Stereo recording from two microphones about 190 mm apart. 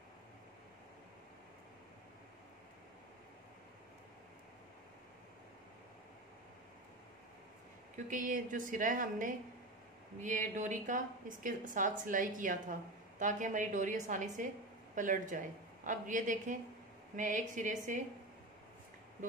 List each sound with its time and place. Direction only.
8.1 s a woman's voice: 45° right (ahead or behind)